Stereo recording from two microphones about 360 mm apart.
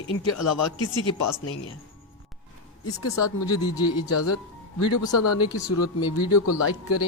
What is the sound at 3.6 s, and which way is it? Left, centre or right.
Speech, centre.